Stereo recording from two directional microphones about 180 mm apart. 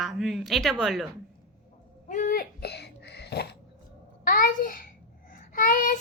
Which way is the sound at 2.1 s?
50° left (ahead or behind).